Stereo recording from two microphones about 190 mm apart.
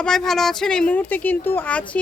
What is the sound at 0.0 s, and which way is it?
Speech, centre (ahead or behind).